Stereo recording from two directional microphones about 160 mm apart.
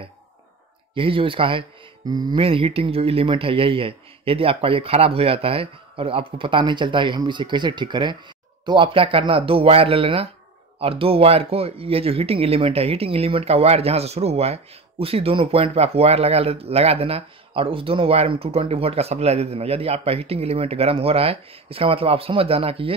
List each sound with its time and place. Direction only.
0.9 s speech: 35° right (ahead or behind)